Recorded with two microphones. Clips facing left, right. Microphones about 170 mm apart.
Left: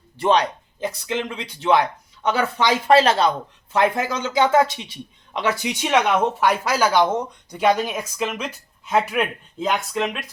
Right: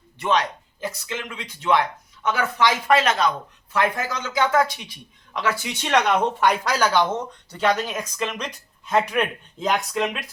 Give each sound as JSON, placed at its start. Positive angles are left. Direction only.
{"t": 0.2, "sound": "speech", "side_deg": 30}
{"t": 5.8, "sound": "speech", "side_deg": 10}